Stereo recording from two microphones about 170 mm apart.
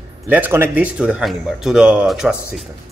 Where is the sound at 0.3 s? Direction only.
10° right (ahead or behind).